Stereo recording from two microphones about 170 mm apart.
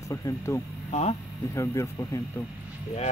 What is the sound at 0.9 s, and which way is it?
Speech, 40° left (ahead or behind).